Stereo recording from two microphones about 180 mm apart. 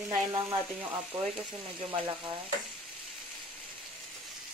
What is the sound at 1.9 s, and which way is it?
Speech, 25° right (ahead or behind).